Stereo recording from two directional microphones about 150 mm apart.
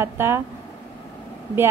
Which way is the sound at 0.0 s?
15° right (ahead or behind).